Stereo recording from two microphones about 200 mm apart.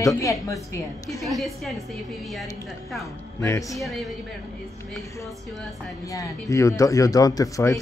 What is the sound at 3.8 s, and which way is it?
Speech, centre (ahead or behind).